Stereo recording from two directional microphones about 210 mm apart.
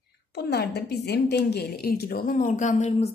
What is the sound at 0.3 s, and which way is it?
A woman's voice, 50° left (ahead or behind).